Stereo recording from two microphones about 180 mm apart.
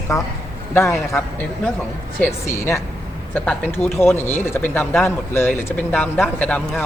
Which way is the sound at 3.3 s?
10° left (ahead or behind).